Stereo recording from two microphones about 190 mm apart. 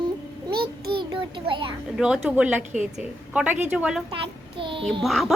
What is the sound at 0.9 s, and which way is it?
Child singing, 25° right (ahead or behind).